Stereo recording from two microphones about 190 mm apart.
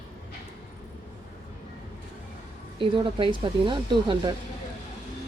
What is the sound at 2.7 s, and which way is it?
A woman's voice, 25° right (ahead or behind).